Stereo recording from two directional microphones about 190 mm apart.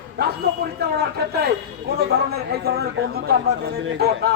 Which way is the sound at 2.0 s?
55° right (ahead or behind).